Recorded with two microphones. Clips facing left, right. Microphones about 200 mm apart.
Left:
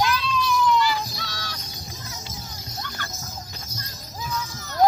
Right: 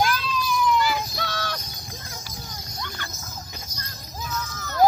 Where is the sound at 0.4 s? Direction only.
55° right (ahead or behind).